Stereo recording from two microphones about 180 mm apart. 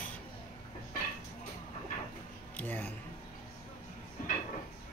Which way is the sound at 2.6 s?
10° left (ahead or behind).